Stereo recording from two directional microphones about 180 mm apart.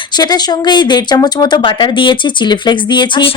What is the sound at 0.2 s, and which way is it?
Speech, 25° left (ahead or behind).